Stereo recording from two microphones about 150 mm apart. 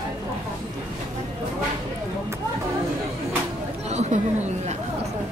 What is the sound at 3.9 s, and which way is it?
Chatter, 50° right (ahead or behind).